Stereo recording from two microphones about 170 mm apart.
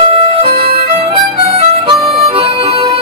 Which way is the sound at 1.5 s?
30° right (ahead or behind).